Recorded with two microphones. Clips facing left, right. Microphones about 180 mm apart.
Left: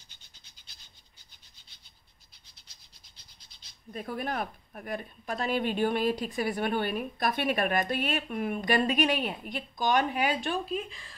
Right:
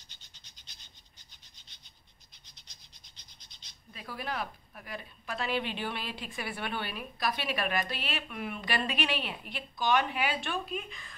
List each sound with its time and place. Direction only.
3.9 s a woman's voice: 50° left (ahead or behind); by 11.1 s 30° left (ahead or behind)